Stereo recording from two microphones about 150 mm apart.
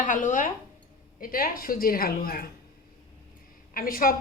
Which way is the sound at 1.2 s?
70° left (ahead or behind).